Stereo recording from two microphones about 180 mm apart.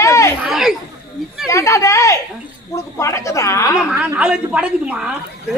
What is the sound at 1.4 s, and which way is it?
A man's voice, 15° left (ahead or behind).